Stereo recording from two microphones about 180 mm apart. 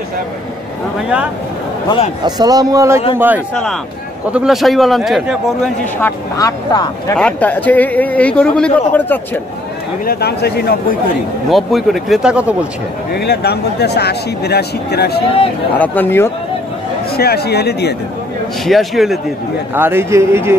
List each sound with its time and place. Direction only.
2.2 s a man's voice: 20° right (ahead or behind); by 5.7 s centre (ahead or behind)
5.9 s speech: 15° left (ahead or behind)
7.2 s a man's voice: 5° left (ahead or behind)
10.0 s speech: 60° left (ahead or behind)
11.5 s a man's voice: centre (ahead or behind)
13.1 s speech: 60° left (ahead or behind)
15.8 s a man's voice: 10° left (ahead or behind)
17.2 s speech: 60° left (ahead or behind)
18.7 s a man's voice: centre (ahead or behind)
19.7 s speech: 10° right (ahead or behind)